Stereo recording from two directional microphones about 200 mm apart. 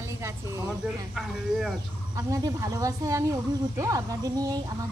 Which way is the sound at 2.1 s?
15° right (ahead or behind).